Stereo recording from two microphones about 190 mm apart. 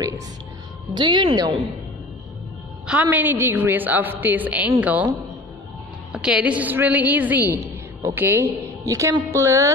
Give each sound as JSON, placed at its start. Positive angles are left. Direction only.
{"t": 0.9, "sound": "a woman's voice", "side_deg": -25}
{"t": 2.9, "sound": "a woman's voice", "side_deg": -10}
{"t": 6.1, "sound": "a woman's voice", "side_deg": -5}